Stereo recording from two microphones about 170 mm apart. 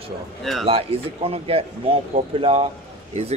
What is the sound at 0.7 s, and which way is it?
Speech, 35° right (ahead or behind).